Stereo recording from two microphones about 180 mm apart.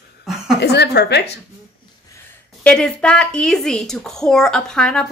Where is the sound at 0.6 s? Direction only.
65° left (ahead or behind).